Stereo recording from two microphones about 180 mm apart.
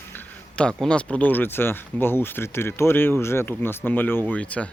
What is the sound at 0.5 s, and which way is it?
Speech, 5° left (ahead or behind).